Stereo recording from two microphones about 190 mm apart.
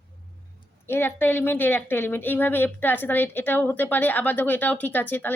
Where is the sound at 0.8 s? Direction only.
10° left (ahead or behind).